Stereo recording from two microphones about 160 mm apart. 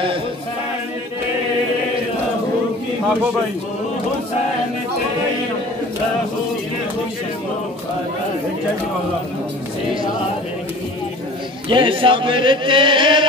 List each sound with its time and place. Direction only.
11.7 s speech: 30° right (ahead or behind)